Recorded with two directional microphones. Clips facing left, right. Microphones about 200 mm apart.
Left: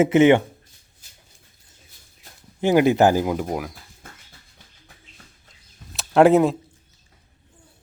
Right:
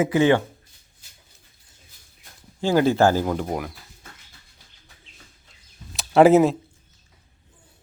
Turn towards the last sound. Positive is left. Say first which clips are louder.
# right 1 dB
turn(degrees=0)  # may be behind; listen again after turning